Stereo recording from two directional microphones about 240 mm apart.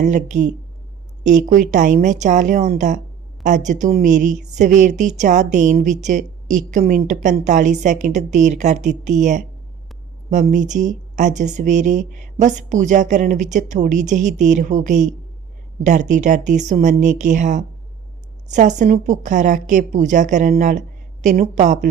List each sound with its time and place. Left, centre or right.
0.0 s a woman's voice: right